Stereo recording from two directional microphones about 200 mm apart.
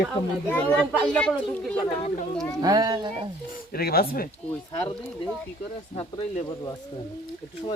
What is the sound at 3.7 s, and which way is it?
Speech, 50° left (ahead or behind).